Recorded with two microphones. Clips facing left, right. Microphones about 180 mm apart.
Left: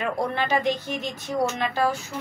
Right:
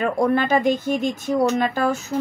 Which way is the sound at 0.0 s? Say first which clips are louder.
Right 7 dB; 45° right (ahead or behind).